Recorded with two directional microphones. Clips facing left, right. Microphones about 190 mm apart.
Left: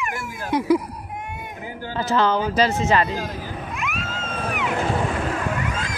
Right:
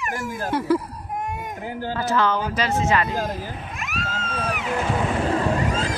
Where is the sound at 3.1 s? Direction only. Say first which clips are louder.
Right 2 dB; 45° right (ahead or behind).